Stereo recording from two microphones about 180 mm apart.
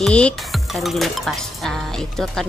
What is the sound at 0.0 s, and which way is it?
Music, 5° left (ahead or behind).